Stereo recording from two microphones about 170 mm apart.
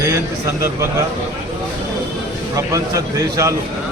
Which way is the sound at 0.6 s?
15° right (ahead or behind).